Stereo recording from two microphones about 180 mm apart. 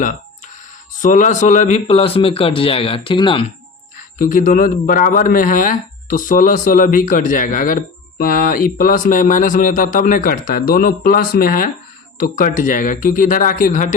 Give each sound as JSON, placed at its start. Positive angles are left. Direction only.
{"t": 0.9, "sound": "speech", "side_deg": 45}
{"t": 4.2, "sound": "speech", "side_deg": 45}